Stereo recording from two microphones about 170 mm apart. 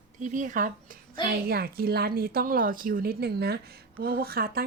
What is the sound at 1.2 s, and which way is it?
A woman's voice, 60° right (ahead or behind).